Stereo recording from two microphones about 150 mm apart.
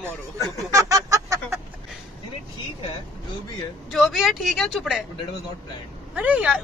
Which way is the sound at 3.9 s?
Centre (ahead or behind).